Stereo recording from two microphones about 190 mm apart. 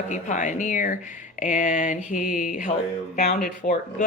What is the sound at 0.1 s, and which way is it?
Speech, 40° left (ahead or behind).